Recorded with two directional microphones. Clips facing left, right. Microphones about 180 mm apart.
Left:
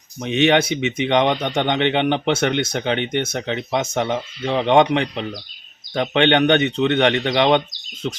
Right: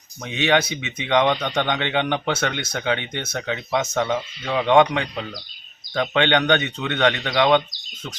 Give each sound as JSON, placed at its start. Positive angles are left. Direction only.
{"t": 0.2, "sound": "speech", "side_deg": 20}